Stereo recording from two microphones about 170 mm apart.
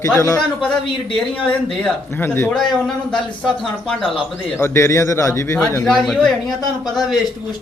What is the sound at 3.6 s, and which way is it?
Speech, centre (ahead or behind).